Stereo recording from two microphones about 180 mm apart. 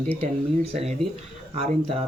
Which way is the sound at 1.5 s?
35° right (ahead or behind).